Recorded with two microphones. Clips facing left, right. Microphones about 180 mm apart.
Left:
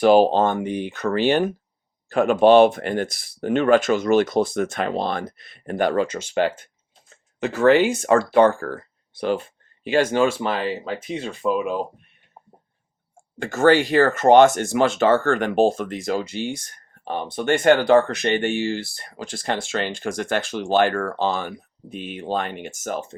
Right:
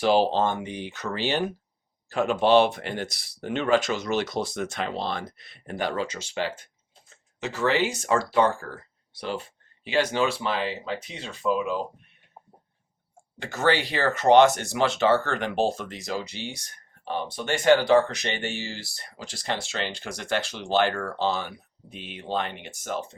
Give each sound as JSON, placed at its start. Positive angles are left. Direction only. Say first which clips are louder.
{"t": 0.0, "sound": "speech", "louder": "left 6 dB", "side_deg": 50}
{"t": 13.4, "sound": "speech", "louder": "left 8 dB", "side_deg": 45}